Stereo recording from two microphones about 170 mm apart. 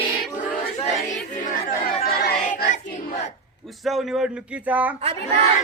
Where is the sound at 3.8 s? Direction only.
Centre (ahead or behind).